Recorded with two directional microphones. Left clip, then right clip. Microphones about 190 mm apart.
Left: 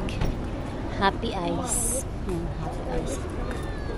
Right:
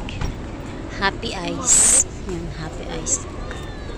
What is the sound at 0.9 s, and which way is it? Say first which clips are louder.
Music: right 2 dB; 10° left (ahead or behind).